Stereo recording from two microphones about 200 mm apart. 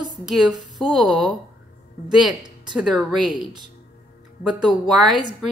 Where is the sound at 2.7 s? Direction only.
5° right (ahead or behind).